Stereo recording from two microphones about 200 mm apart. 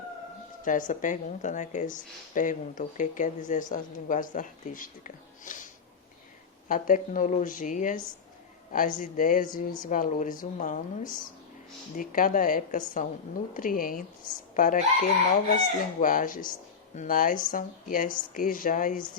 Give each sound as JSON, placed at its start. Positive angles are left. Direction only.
{"t": 0.6, "sound": "speech", "side_deg": 40}
{"t": 6.7, "sound": "speech", "side_deg": 40}